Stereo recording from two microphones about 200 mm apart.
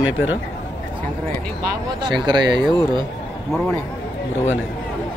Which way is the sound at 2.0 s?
20° right (ahead or behind).